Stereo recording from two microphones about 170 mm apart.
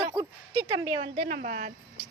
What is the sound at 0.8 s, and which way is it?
Speech, 30° right (ahead or behind).